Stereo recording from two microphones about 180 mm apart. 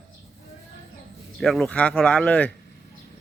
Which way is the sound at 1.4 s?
Centre (ahead or behind).